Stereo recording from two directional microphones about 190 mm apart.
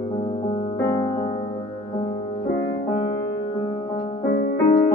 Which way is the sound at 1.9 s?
30° left (ahead or behind).